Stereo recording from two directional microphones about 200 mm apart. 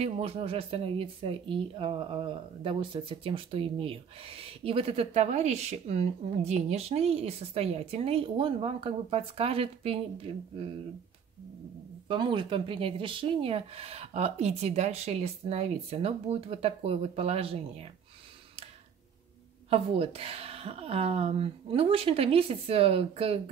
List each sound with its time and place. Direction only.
0.0 s a woman's voice: 30° right (ahead or behind)
12.1 s a woman's voice: 25° right (ahead or behind)
19.7 s a woman's voice: 30° right (ahead or behind)